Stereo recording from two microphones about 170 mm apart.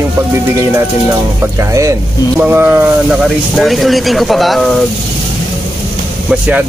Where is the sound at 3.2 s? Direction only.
Centre (ahead or behind).